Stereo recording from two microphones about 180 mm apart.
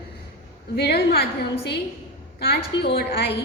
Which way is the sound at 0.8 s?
65° left (ahead or behind).